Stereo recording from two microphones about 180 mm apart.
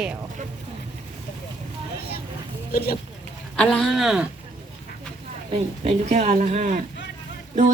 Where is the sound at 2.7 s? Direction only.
55° left (ahead or behind).